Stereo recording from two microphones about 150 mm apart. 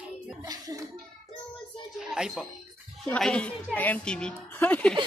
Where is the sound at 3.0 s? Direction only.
5° left (ahead or behind).